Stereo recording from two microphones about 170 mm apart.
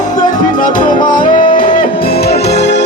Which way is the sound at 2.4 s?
80° left.